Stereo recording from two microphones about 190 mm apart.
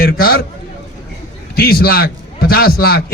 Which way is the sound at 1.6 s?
50° left (ahead or behind).